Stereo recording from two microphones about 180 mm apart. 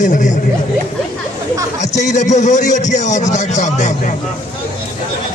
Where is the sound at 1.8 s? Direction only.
40° left (ahead or behind).